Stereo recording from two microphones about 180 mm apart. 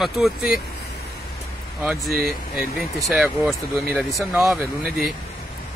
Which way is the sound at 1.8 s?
5° right (ahead or behind).